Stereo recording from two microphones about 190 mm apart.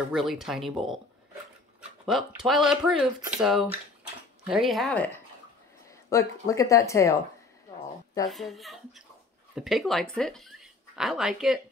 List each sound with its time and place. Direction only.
0.1 s speech: centre (ahead or behind)
2.0 s speech: centre (ahead or behind)
6.0 s speech: 15° left (ahead or behind)
8.3 s speech: centre (ahead or behind)